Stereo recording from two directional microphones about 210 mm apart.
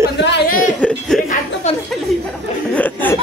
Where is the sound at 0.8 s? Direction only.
5° left (ahead or behind).